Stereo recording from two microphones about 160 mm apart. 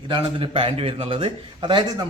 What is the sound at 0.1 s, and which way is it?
A man's voice, 35° right (ahead or behind).